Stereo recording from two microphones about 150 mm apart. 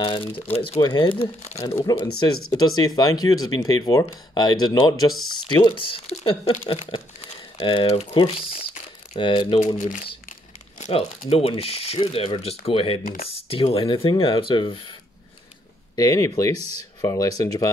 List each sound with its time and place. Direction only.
0.0 s speech: 35° left (ahead or behind)
9.8 s speech: 60° left (ahead or behind)
10.8 s speech: 40° left (ahead or behind)
13.0 s speech: 70° left (ahead or behind)
13.4 s speech: 40° left (ahead or behind)
16.0 s speech: 20° left (ahead or behind)